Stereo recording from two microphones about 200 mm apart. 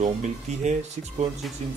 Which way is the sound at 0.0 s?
35° right (ahead or behind).